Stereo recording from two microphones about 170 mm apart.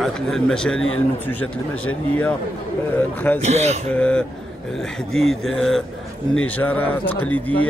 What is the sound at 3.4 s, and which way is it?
Speech, 40° right (ahead or behind).